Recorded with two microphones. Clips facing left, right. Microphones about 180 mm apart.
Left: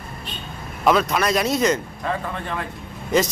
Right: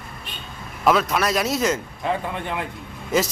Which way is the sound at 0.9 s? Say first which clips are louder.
Left 1 dB; centre (ahead or behind).